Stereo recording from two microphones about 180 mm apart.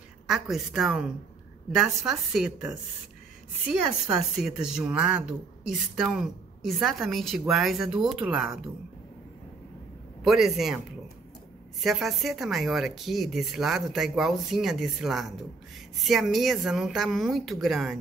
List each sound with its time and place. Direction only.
0.3 s speech: centre (ahead or behind)
4.4 s speech: 5° right (ahead or behind)
10.2 s speech: centre (ahead or behind)
11.8 s speech: centre (ahead or behind)